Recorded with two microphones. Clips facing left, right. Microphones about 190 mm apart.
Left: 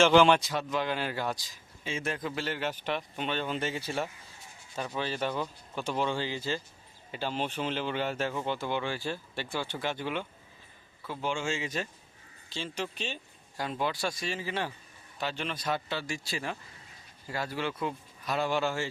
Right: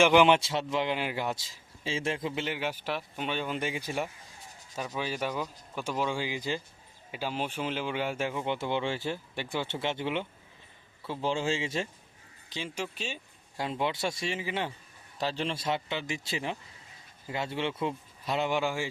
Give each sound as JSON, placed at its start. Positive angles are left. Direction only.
{"t": 0.0, "sound": "a man's voice", "side_deg": -15}
{"t": 12.5, "sound": "a man's voice", "side_deg": -15}
{"t": 13.6, "sound": "speech", "side_deg": -25}
{"t": 15.2, "sound": "speech", "side_deg": -35}